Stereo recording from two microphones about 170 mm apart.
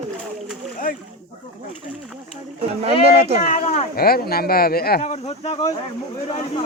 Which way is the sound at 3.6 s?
40° left (ahead or behind).